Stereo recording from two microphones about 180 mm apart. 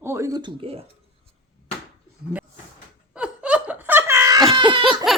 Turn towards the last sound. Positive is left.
turn(degrees=0)  # may be behind; listen again after turning